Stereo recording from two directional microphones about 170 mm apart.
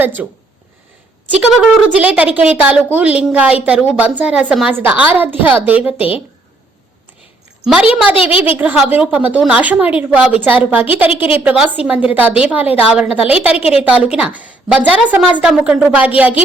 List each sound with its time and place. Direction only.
0.0 s speech: 10° right (ahead or behind)
1.4 s speech: 5° right (ahead or behind)
7.6 s a woman's voice: 5° right (ahead or behind)
7.9 s a woman's voice: 35° left (ahead or behind)
8.5 s speech: 5° right (ahead or behind)